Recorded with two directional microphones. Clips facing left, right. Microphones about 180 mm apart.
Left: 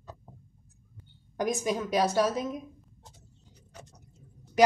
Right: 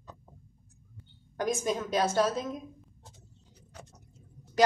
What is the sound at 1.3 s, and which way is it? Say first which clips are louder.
Speech: left 1 dB; 15° left (ahead or behind).